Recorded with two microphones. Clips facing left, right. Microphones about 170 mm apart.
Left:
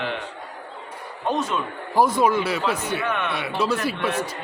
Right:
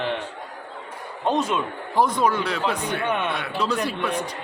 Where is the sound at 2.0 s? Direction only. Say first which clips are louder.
Left 2 dB; 10° left (ahead or behind).